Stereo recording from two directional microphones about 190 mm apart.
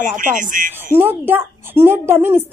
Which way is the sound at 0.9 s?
10° right (ahead or behind).